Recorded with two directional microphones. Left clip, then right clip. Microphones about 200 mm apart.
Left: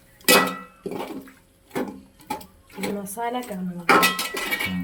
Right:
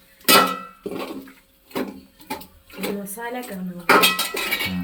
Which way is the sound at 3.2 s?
50° left (ahead or behind).